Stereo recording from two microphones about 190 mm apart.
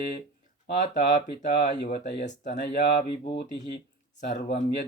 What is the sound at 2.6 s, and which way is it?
Speech, 60° left (ahead or behind).